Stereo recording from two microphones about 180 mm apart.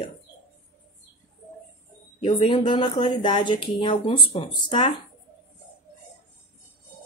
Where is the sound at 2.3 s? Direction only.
30° left (ahead or behind).